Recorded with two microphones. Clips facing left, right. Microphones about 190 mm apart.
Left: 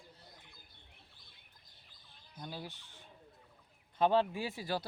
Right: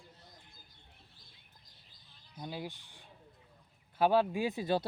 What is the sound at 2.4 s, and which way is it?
Speech, 15° right (ahead or behind).